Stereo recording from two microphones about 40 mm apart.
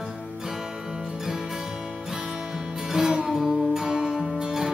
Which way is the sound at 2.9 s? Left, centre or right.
Centre.